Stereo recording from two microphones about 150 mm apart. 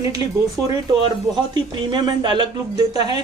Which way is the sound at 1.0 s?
30° right (ahead or behind).